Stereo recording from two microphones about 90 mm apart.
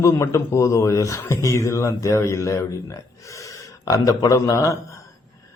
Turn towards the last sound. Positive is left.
turn(degrees=35)  # may be behind; listen again after turning